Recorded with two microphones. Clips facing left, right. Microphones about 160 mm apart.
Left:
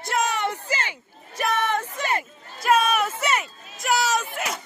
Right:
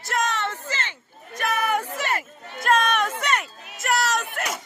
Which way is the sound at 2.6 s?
5° left (ahead or behind).